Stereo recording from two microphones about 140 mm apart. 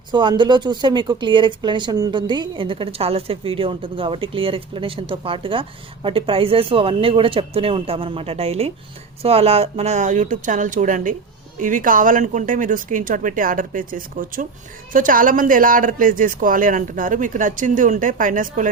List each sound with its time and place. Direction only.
0.1 s speech: 35° right (ahead or behind); by 18.7 s 70° right (ahead or behind)